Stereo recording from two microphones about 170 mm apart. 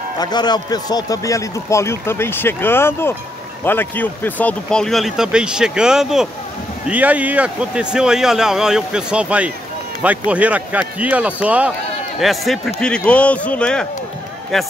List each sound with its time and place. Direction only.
0.2 s a man's voice: 25° left (ahead or behind); by 14.7 s centre (ahead or behind)